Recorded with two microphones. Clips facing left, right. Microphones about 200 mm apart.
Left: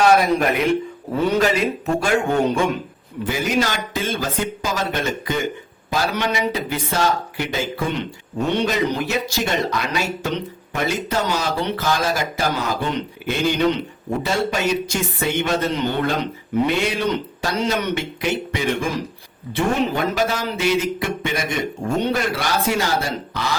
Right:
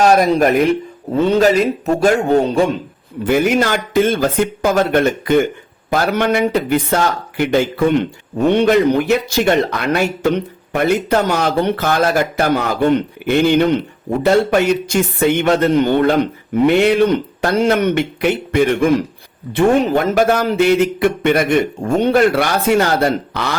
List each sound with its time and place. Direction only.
0.0 s a man's voice: 40° right (ahead or behind)
3.2 s speech: 55° right (ahead or behind)
19.5 s speech: 50° right (ahead or behind)